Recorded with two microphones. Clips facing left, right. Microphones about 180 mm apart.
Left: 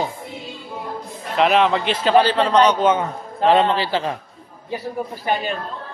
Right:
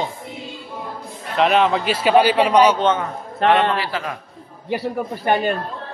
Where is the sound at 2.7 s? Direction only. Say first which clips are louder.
Left 1 dB; 10° left (ahead or behind).